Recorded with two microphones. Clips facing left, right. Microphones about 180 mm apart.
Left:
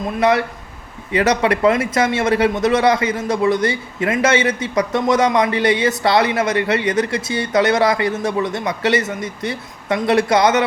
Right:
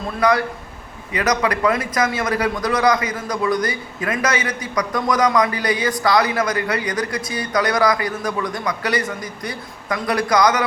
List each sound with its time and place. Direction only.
0.2 s a man's voice: 25° left (ahead or behind)